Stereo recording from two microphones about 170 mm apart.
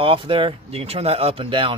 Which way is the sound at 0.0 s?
30° right (ahead or behind).